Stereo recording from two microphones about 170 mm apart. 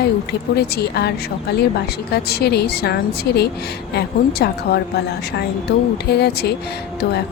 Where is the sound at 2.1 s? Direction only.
70° left (ahead or behind).